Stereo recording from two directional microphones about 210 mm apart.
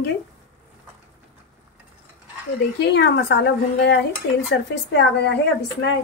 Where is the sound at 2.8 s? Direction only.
55° left (ahead or behind).